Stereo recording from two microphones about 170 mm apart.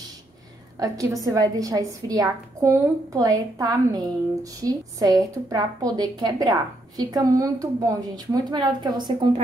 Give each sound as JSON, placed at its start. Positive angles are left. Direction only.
{"t": 0.7, "sound": "a woman's voice", "side_deg": -20}